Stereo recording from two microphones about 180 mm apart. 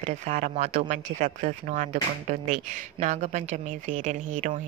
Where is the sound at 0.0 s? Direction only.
40° right (ahead or behind).